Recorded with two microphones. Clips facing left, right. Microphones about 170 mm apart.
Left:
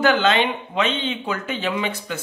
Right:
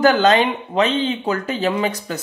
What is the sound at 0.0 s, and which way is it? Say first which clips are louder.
Speech: right 4 dB; 40° right (ahead or behind).